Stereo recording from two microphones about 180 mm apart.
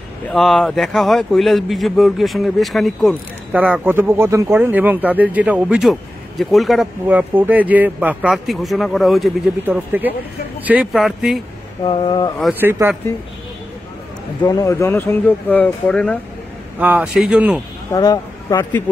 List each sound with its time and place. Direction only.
0.3 s speech: centre (ahead or behind)
11.8 s speech: 25° left (ahead or behind)
12.5 s speech: 10° right (ahead or behind)
14.4 s speech: 20° left (ahead or behind)
16.8 s speech: 5° right (ahead or behind)
17.9 s speech: 20° left (ahead or behind)